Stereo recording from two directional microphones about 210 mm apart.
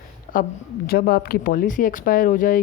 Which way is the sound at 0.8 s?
45° left (ahead or behind).